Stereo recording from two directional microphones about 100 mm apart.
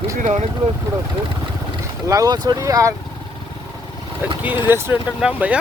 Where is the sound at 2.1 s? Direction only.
40° right (ahead or behind).